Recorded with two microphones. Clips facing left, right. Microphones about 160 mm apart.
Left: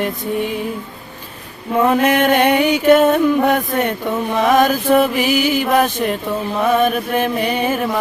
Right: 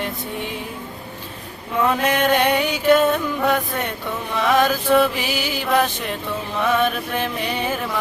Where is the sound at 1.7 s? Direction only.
50° left (ahead or behind).